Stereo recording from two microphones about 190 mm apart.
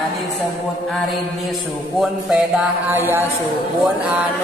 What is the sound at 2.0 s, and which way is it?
Music, centre (ahead or behind).